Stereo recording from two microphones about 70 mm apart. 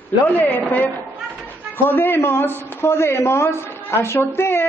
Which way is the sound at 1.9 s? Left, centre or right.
Left.